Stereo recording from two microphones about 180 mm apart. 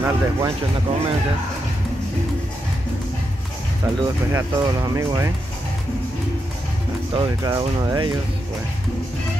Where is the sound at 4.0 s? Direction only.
20° right (ahead or behind).